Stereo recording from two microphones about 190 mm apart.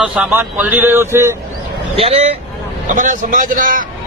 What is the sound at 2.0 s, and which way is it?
Speech, 30° right (ahead or behind).